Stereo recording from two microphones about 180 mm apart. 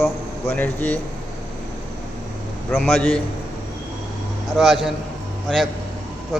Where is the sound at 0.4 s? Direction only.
10° left (ahead or behind).